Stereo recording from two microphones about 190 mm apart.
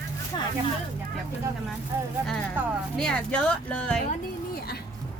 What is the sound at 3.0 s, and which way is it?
Speech, 5° left (ahead or behind).